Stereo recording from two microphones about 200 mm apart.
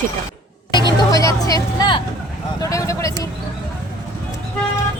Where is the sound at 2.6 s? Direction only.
15° left (ahead or behind).